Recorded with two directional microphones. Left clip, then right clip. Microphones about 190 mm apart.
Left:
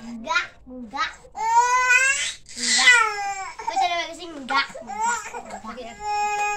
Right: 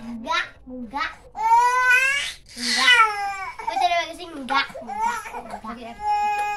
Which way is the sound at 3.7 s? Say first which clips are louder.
Right 2 dB; 30° right (ahead or behind).